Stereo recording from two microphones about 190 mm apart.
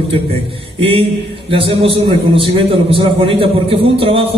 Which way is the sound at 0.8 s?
30° right (ahead or behind).